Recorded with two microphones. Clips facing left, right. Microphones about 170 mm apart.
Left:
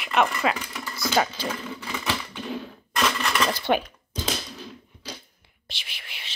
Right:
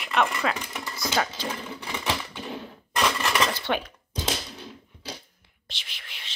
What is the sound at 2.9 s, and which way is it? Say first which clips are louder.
Dishes: even; 10° right (ahead or behind).